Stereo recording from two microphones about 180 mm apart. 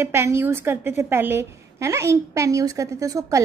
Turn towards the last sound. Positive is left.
turn(degrees=-20)  # may be behind; listen again after turning